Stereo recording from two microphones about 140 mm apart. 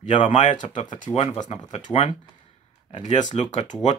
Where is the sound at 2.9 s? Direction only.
55° left (ahead or behind).